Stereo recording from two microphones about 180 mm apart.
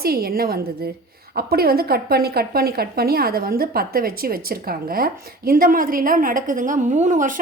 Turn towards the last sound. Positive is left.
turn(degrees=-45)  # may be behind; listen again after turning